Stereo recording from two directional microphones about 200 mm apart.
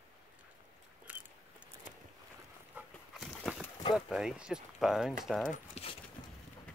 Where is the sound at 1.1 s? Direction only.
5° right (ahead or behind).